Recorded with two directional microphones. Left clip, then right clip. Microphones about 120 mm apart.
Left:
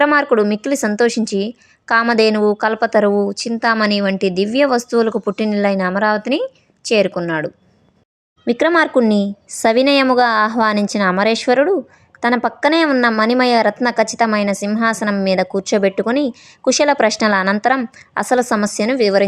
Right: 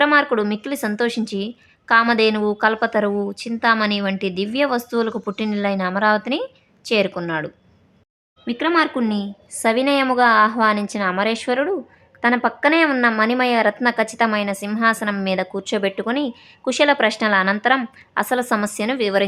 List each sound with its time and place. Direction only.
0.0 s a woman's voice: 35° left (ahead or behind)
8.4 s a woman's voice: 35° left (ahead or behind)